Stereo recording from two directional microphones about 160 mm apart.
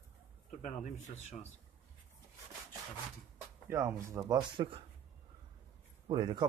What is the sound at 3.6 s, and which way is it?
Speech, 15° right (ahead or behind).